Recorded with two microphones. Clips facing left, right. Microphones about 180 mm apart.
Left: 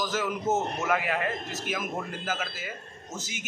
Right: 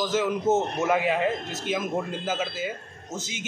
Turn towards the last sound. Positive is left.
turn(degrees=-20)  # may be behind; listen again after turning